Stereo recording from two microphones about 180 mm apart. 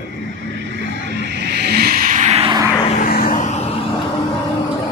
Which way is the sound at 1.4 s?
65° right (ahead or behind).